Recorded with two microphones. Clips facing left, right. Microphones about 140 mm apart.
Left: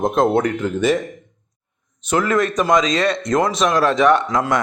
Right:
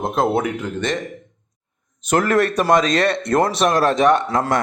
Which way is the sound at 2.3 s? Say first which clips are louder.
Even; 65° right (ahead or behind).